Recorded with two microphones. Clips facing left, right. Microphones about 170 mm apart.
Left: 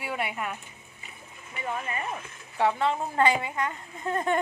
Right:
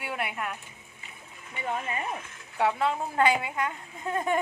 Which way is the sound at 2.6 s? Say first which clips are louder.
Left 1 dB; centre (ahead or behind).